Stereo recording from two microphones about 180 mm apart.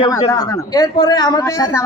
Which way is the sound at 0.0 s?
20° left (ahead or behind).